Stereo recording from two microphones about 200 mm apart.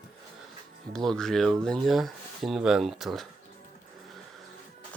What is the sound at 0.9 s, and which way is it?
Speech, 5° left (ahead or behind).